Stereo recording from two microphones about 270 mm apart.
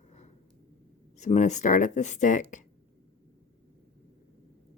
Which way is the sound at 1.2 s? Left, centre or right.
Left.